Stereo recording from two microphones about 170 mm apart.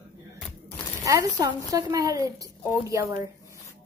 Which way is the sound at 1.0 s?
20° right (ahead or behind).